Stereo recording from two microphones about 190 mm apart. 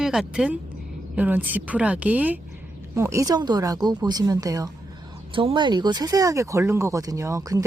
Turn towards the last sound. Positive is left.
turn(degrees=-20)  # may be behind; listen again after turning